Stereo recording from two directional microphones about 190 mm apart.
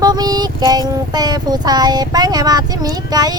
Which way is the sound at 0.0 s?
20° right (ahead or behind).